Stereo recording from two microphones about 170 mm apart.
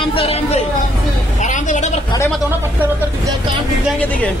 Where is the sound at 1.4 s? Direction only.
45° left (ahead or behind).